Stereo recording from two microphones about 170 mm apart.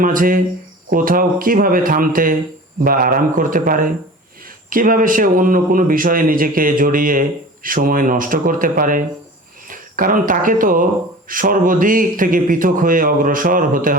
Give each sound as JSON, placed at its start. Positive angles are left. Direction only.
{"t": 0.0, "sound": "a man's voice", "side_deg": -55}